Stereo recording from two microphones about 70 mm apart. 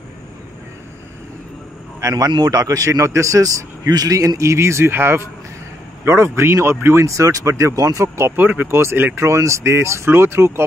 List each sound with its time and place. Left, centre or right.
2.0 s speech: right
4.4 s speech: right
8.4 s speech: right